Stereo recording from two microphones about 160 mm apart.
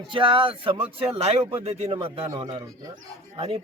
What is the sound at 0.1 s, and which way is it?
Speech, 35° right (ahead or behind).